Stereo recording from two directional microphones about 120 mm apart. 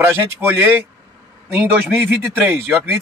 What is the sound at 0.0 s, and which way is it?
Speech, 20° right (ahead or behind).